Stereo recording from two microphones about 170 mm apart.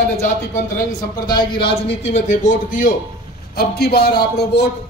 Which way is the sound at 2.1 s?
45° left (ahead or behind).